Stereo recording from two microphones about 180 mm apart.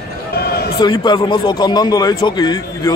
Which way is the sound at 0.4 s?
60° left (ahead or behind).